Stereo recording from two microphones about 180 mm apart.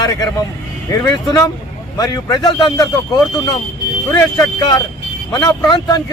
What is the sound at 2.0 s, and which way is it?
Speech, 20° left (ahead or behind).